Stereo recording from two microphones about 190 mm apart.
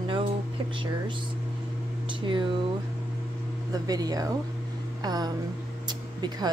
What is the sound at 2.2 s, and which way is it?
Speech, 25° right (ahead or behind).